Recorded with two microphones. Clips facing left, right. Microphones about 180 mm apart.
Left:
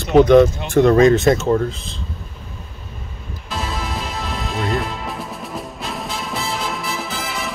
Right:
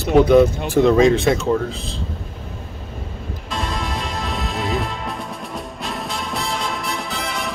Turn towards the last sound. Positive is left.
turn(degrees=0)  # may be behind; listen again after turning